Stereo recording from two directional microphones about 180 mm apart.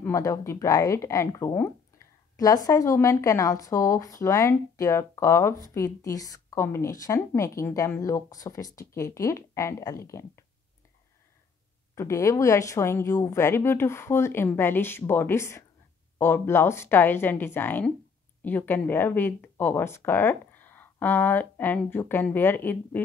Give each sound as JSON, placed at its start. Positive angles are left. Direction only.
{"t": 0.0, "sound": "a woman's voice", "side_deg": 15}
{"t": 11.9, "sound": "a woman's voice", "side_deg": 15}